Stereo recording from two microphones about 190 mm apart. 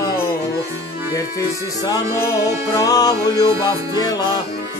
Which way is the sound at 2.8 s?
20° left (ahead or behind).